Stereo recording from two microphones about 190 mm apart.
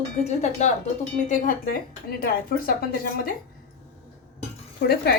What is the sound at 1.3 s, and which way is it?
A woman's voice, 45° left (ahead or behind).